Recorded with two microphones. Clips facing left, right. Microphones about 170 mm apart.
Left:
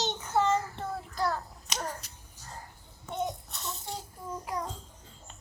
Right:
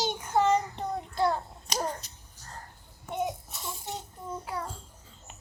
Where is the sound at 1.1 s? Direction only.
20° right (ahead or behind).